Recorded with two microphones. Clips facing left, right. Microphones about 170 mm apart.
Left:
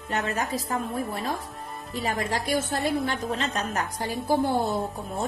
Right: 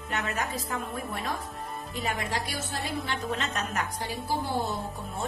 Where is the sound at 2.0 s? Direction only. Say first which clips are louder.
Left 4 dB; 40° left (ahead or behind).